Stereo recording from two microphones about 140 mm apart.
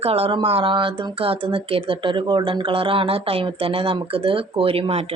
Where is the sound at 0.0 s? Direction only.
45° right (ahead or behind).